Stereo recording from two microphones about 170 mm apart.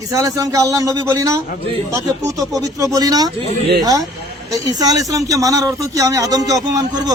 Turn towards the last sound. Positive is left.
turn(degrees=-20)  # may be behind; listen again after turning